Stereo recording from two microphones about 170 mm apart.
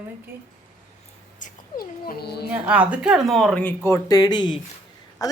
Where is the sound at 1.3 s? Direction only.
55° left (ahead or behind); by 2.5 s 70° left (ahead or behind).